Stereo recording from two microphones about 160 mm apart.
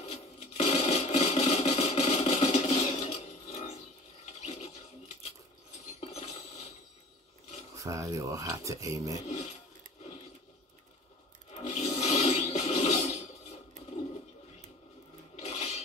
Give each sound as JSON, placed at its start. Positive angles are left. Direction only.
{"t": 0.0, "sound": "a sound", "side_deg": 40}
{"t": 5.9, "sound": "filing", "side_deg": 40}
{"t": 7.7, "sound": "speech", "side_deg": -20}
{"t": 11.5, "sound": "toilet flush", "side_deg": 45}
{"t": 15.4, "sound": "filing", "side_deg": 40}